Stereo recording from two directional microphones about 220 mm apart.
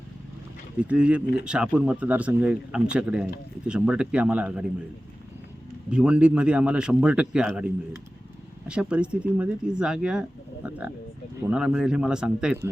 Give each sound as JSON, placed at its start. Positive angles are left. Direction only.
{"t": 0.8, "sound": "speech", "side_deg": -5}
{"t": 5.9, "sound": "speech", "side_deg": -5}